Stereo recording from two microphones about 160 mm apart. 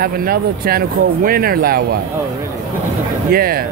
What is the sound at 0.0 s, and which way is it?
Speech, 70° right (ahead or behind).